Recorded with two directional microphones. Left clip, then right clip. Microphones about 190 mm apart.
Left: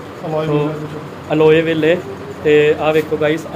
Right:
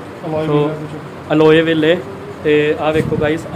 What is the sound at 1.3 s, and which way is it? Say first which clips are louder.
Speech: right 1 dB; 20° right (ahead or behind).